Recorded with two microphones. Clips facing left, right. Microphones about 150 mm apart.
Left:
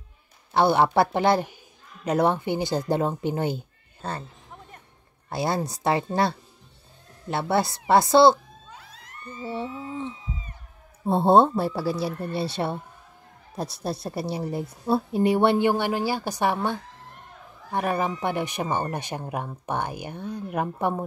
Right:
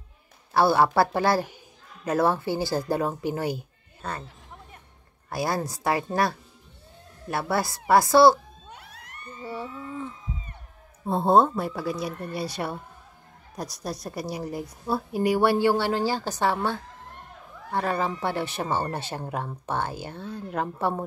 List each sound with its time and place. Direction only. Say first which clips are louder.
0.5 s a woman's voice: even; 20° left (ahead or behind)
5.3 s a woman's voice: left 1 dB; 25° left (ahead or behind)
7.2 s a woman's voice: left 3 dB; 25° left (ahead or behind)
8.6 s a sound: left 1 dB; 65° right (ahead or behind)
9.2 s cat: left 3 dB; 90° left
9.5 s a sound: left 3 dB; 25° left (ahead or behind)
11.1 s a woman's voice: left 2 dB; 30° left (ahead or behind); by 16.5 s 15° left (ahead or behind)
17.7 s speech: left 1 dB; 15° left (ahead or behind)